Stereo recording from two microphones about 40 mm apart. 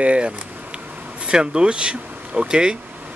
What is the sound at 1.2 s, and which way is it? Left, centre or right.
Speech, right.